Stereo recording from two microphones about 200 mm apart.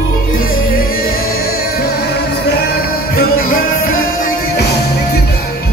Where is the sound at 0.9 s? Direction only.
50° left (ahead or behind).